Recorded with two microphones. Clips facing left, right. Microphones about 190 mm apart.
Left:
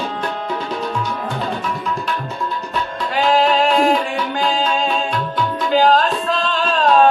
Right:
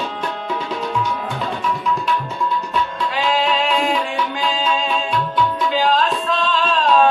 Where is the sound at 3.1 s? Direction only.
45° left (ahead or behind).